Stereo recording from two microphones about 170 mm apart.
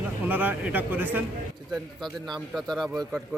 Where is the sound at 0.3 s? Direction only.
10° right (ahead or behind).